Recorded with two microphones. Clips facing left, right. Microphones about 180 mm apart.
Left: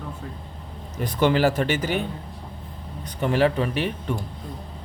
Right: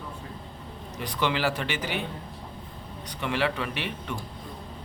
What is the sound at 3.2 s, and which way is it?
Speech, 40° left (ahead or behind).